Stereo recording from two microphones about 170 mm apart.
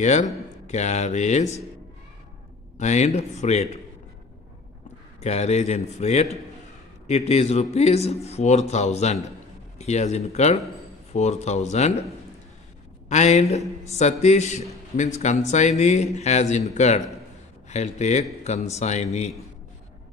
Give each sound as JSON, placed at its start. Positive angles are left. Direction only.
{"t": 0.0, "sound": "a man's voice", "side_deg": 45}
{"t": 2.8, "sound": "a man's voice", "side_deg": 40}
{"t": 5.2, "sound": "a man's voice", "side_deg": 40}
{"t": 13.1, "sound": "a man's voice", "side_deg": 40}